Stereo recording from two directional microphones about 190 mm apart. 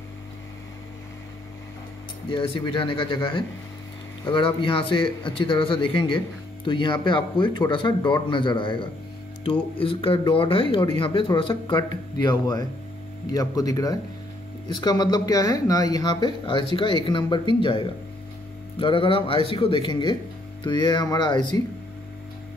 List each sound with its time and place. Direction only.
2.3 s a man's voice: 25° left (ahead or behind)